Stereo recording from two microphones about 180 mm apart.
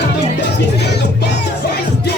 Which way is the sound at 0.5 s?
70° left (ahead or behind).